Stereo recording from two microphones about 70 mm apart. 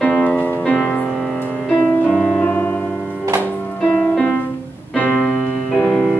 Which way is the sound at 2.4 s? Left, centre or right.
Left.